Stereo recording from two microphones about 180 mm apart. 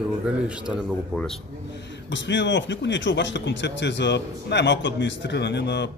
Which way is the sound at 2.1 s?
85° left.